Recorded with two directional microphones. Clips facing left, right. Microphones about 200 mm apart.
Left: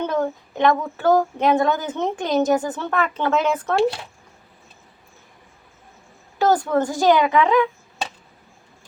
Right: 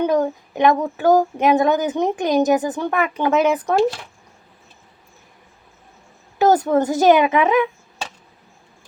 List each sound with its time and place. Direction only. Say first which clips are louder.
0.0 s speech: right 4 dB; 15° right (ahead or behind)
6.4 s a woman's voice: right 3 dB; 20° right (ahead or behind)